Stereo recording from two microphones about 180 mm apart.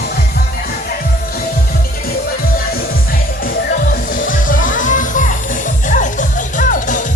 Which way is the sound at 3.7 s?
50° left (ahead or behind).